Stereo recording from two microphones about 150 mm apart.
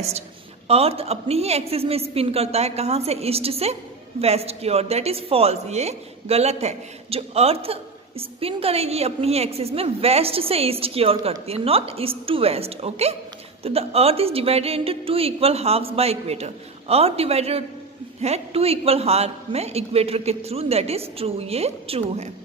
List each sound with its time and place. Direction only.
0.7 s a man's voice: 40° right (ahead or behind)